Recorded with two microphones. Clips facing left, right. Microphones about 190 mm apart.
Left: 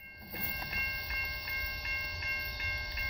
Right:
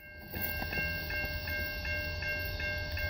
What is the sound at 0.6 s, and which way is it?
Train, 50° right (ahead or behind).